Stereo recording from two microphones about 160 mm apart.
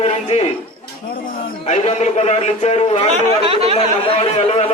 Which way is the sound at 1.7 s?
45° left (ahead or behind).